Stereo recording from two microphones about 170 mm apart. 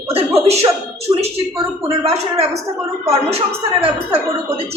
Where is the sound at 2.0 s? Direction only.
35° right (ahead or behind).